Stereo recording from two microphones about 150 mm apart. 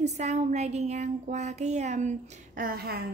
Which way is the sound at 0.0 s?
50° right (ahead or behind).